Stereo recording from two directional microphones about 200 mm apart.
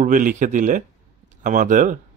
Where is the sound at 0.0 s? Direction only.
40° right (ahead or behind).